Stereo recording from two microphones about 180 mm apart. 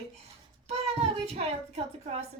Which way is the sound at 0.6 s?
35° right (ahead or behind).